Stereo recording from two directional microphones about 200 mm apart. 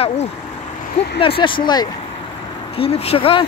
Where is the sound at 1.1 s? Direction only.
25° left (ahead or behind).